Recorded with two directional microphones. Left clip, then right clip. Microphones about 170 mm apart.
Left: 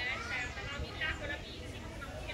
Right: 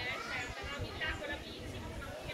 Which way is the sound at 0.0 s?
20° right (ahead or behind).